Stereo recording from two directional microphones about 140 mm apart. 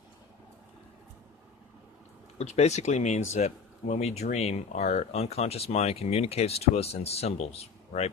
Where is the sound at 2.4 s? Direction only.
50° left (ahead or behind).